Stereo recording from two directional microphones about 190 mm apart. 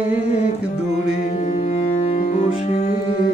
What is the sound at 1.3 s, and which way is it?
Music, 40° left (ahead or behind).